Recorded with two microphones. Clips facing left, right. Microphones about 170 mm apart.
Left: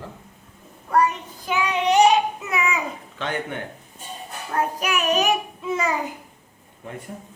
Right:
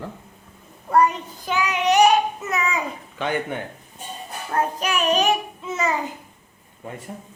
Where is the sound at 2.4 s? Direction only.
15° left (ahead or behind).